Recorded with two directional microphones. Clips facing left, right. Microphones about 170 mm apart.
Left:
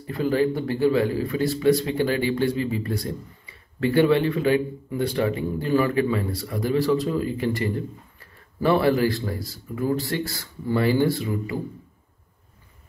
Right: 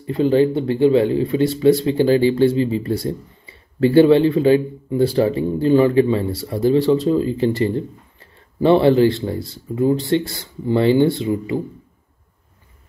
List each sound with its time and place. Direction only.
0.0 s a man's voice: 25° right (ahead or behind)